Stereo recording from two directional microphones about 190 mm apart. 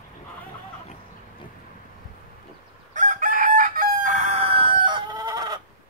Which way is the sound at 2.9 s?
40° right (ahead or behind).